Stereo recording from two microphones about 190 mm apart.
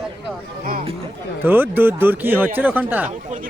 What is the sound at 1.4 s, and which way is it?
Speech, 10° right (ahead or behind).